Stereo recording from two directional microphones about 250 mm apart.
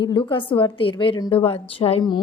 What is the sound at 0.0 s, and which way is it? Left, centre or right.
A woman's voice, centre.